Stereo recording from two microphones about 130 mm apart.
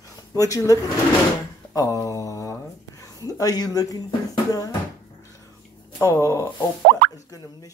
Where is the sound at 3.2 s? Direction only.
30° left (ahead or behind).